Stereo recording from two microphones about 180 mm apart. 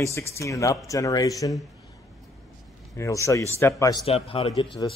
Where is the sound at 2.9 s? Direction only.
15° left (ahead or behind).